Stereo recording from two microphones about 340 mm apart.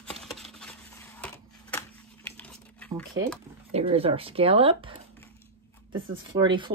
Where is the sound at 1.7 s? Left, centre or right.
Centre.